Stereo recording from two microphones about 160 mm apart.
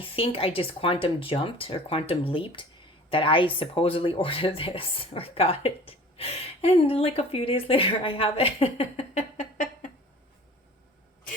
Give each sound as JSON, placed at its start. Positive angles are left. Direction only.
{"t": 0.0, "sound": "speech", "side_deg": 35}